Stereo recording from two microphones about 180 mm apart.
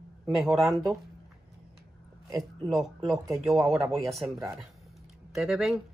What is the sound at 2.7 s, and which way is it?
Speech, centre (ahead or behind).